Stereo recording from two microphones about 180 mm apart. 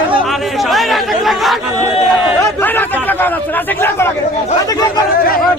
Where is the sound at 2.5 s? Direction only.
10° left (ahead or behind).